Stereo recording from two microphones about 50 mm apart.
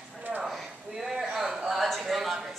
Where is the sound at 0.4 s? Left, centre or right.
Centre.